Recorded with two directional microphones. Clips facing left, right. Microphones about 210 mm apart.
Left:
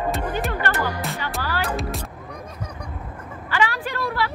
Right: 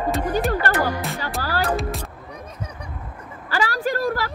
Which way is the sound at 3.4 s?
40° right (ahead or behind).